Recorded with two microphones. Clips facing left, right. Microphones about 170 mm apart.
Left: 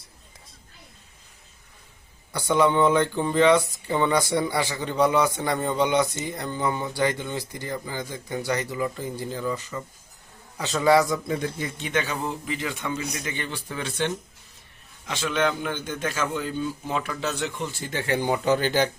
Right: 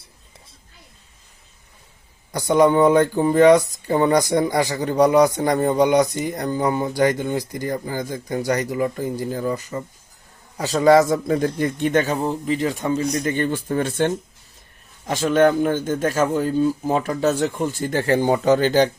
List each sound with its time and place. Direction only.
2.6 s a man's voice: 40° right (ahead or behind)
7.3 s speech: 15° right (ahead or behind)
7.6 s a man's voice: 40° right (ahead or behind)